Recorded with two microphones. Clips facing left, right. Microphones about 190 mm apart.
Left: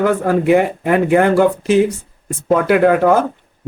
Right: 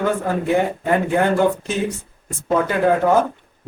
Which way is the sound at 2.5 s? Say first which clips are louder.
Left 5 dB; 70° left (ahead or behind).